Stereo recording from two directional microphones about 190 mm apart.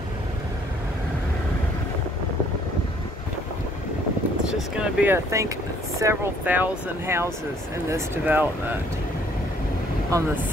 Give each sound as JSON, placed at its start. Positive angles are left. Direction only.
{"t": 4.5, "sound": "speech", "side_deg": -5}
{"t": 10.1, "sound": "speech", "side_deg": -15}